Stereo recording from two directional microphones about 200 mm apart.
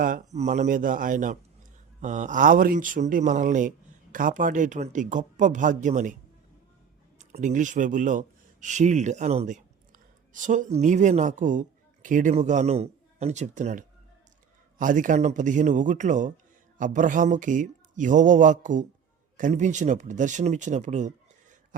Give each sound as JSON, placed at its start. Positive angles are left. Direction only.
{"t": 0.0, "sound": "speech", "side_deg": -40}
{"t": 7.2, "sound": "speech", "side_deg": -40}